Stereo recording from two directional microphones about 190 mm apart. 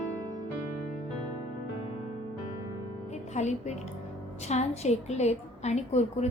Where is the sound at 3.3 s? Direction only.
35° left (ahead or behind).